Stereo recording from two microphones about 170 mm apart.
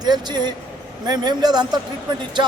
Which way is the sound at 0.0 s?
25° right (ahead or behind).